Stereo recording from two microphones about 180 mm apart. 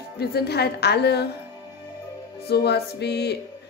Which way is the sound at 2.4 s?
65° left (ahead or behind).